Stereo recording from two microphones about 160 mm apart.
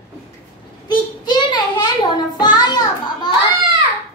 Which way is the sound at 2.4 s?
25° left (ahead or behind).